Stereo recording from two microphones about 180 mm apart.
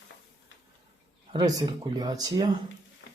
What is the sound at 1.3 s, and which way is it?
Speech, 25° right (ahead or behind).